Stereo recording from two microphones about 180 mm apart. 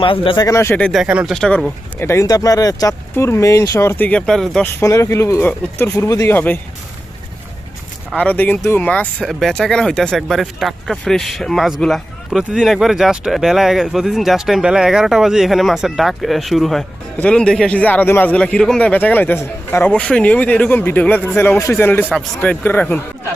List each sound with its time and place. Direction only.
0.0 s a man's voice: 30° left (ahead or behind); by 1.0 s 5° left (ahead or behind)
1.0 s a man's voice: 5° right (ahead or behind)
4.8 s a man's voice: 15° left (ahead or behind)
8.1 s a man's voice: 5° left (ahead or behind)